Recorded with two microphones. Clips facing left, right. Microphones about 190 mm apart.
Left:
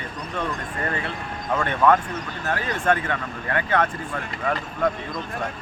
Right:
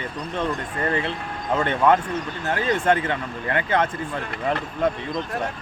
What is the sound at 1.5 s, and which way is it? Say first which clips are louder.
Speech: even; 25° right (ahead or behind).